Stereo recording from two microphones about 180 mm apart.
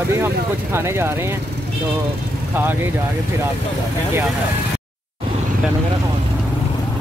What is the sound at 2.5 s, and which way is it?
Speech, 10° right (ahead or behind).